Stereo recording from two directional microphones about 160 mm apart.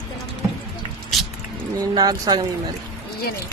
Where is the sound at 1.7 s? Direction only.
25° right (ahead or behind).